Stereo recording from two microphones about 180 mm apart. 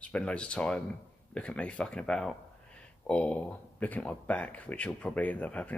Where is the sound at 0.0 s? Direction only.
5° left (ahead or behind).